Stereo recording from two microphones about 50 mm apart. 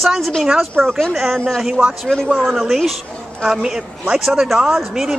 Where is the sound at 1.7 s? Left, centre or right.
Centre.